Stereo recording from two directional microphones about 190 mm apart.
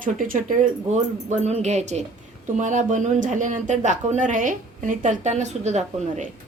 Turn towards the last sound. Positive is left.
turn(degrees=-35)  # may be behind; listen again after turning